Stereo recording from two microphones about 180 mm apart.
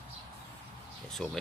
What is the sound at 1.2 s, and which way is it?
Speech, centre (ahead or behind).